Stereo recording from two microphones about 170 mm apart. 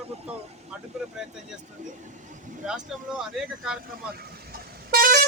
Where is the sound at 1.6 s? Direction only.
45° right (ahead or behind).